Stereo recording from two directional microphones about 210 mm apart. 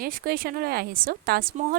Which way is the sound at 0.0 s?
45° right (ahead or behind).